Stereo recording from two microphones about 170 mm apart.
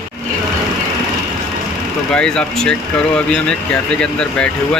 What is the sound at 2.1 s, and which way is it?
Speech, 5° left (ahead or behind).